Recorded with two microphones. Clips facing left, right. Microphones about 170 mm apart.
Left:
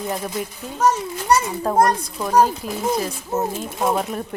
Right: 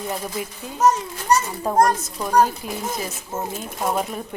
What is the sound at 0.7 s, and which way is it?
Speech, centre (ahead or behind).